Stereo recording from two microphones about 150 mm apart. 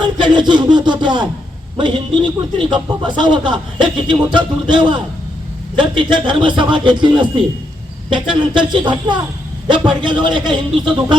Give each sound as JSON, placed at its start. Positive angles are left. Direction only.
{"t": 0.2, "sound": "speech", "side_deg": -30}